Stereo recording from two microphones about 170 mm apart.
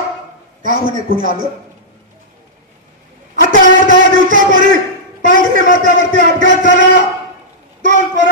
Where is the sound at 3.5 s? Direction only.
50° right (ahead or behind).